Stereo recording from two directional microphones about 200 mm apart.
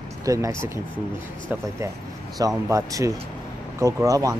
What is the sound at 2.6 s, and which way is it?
Speech, 15° right (ahead or behind).